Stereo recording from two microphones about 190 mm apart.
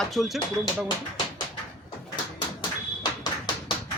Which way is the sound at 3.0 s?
20° left (ahead or behind).